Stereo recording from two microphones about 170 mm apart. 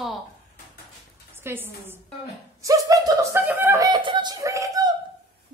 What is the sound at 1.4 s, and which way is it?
A woman's voice, 10° right (ahead or behind).